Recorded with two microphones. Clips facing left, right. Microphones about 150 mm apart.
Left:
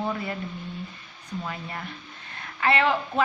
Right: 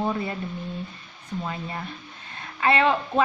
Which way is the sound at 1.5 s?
20° right (ahead or behind).